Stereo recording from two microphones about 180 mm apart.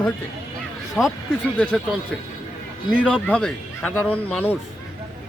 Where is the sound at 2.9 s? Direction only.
5° left (ahead or behind).